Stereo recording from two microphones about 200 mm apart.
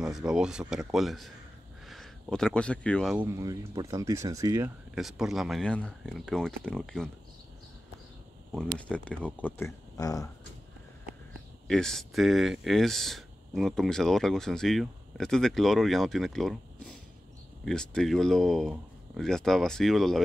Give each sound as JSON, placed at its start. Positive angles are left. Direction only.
{"t": 0.0, "sound": "speech", "side_deg": 0}
{"t": 3.3, "sound": "speech", "side_deg": -15}
{"t": 4.9, "sound": "speech", "side_deg": 0}
{"t": 8.5, "sound": "speech", "side_deg": 5}
{"t": 11.6, "sound": "speech", "side_deg": 5}